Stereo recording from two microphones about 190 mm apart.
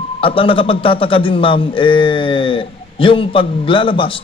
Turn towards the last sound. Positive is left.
turn(degrees=25)  # may be behind; listen again after turning